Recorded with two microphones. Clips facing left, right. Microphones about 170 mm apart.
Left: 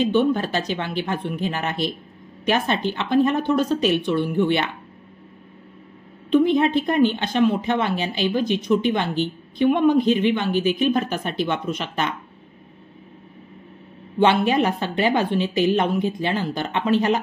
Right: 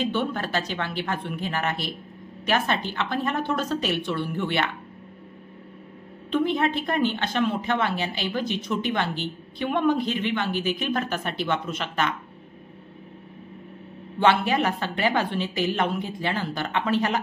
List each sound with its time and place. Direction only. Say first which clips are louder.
0.0 s a woman's voice: left 7 dB; 20° left (ahead or behind)
6.3 s speech: left 6 dB; 15° left (ahead or behind)
14.2 s a woman's voice: left 3 dB; 20° left (ahead or behind)